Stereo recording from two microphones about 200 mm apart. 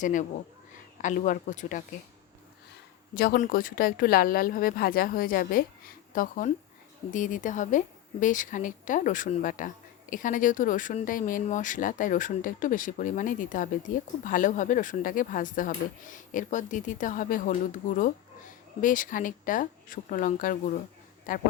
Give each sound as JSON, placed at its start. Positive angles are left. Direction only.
{"t": 0.0, "sound": "a woman's voice", "side_deg": 40}
{"t": 3.2, "sound": "a woman's voice", "side_deg": 45}